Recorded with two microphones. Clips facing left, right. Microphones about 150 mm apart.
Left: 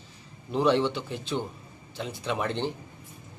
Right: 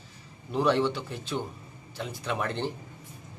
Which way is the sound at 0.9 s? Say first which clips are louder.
Left 2 dB; 25° left (ahead or behind).